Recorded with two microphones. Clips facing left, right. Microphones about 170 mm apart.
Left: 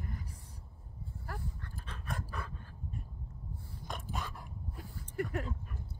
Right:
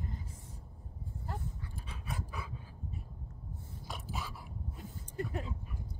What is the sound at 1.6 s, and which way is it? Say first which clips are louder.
Pant: even; 10° right (ahead or behind).